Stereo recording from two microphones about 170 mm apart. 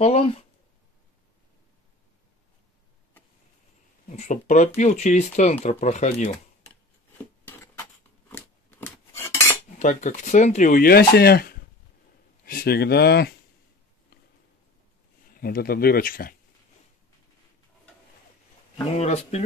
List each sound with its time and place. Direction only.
0.0 s speech: 35° left (ahead or behind)
4.1 s speech: 45° left (ahead or behind)
7.4 s patter: 15° left (ahead or behind)
8.3 s cutlery: 10° left (ahead or behind)
9.8 s speech: 45° left (ahead or behind); by 13.3 s 70° left (ahead or behind)
15.4 s speech: 65° left (ahead or behind)
18.9 s speech: 40° left (ahead or behind)